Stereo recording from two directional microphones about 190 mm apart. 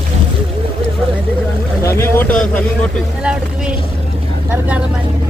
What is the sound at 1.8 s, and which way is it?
Boat, 15° left (ahead or behind).